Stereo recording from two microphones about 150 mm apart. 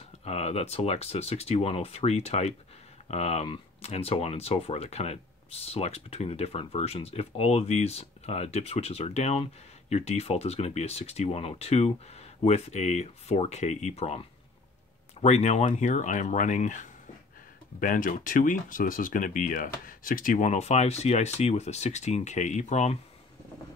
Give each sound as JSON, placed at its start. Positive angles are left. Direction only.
{"t": 0.2, "sound": "speech", "side_deg": 45}
{"t": 20.4, "sound": "speech", "side_deg": 45}